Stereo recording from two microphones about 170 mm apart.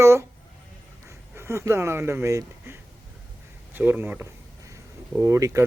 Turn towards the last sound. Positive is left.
turn(degrees=-15)  # may be behind; listen again after turning